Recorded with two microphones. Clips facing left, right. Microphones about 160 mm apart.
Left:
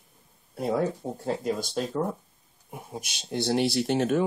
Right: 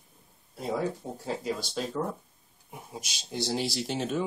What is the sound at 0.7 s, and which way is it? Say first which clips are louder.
Speech: left 3 dB; centre (ahead or behind).